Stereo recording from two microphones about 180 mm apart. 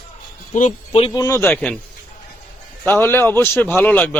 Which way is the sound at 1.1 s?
20° left (ahead or behind).